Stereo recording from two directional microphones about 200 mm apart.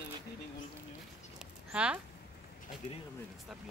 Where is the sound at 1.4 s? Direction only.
5° right (ahead or behind).